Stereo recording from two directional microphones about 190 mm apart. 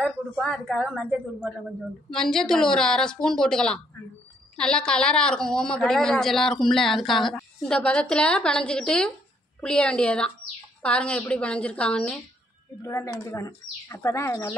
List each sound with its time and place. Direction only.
0.0 s a woman's voice: centre (ahead or behind)